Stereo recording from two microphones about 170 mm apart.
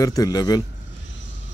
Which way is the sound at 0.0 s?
20° left (ahead or behind).